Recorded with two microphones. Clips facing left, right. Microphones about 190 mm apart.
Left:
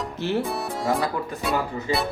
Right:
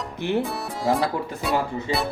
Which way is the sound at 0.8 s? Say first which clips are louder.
Right 3 dB; centre (ahead or behind).